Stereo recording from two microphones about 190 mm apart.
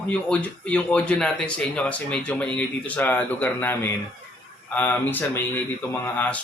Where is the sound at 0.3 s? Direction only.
5° left (ahead or behind).